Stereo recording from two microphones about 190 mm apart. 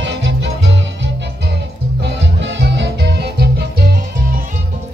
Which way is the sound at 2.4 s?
70° right (ahead or behind).